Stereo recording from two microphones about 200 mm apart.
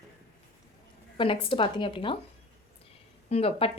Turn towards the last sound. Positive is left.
turn(degrees=30)  # may be behind; listen again after turning